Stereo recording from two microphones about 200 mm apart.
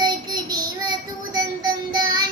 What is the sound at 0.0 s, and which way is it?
Child singing, 20° right (ahead or behind).